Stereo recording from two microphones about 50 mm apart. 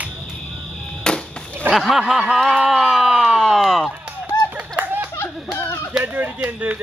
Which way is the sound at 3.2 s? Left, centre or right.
Centre.